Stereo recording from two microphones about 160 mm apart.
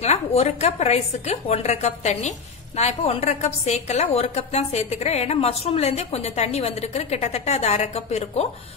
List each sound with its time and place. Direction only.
0.0 s a woman's voice: 40° left (ahead or behind)